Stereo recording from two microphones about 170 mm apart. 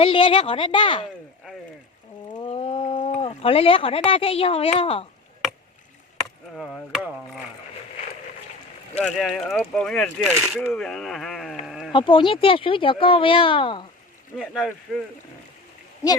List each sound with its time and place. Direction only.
0.0 s speech: 30° left (ahead or behind)
2.3 s speech: 30° left (ahead or behind)
6.6 s speech: 5° left (ahead or behind)
9.1 s speech: centre (ahead or behind)
11.6 s sheep: centre (ahead or behind)
11.9 s speech: 30° left (ahead or behind)
14.3 s speech: centre (ahead or behind)
16.0 s a woman's voice: 15° left (ahead or behind)